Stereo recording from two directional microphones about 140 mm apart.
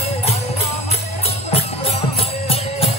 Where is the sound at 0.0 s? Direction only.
50° left (ahead or behind).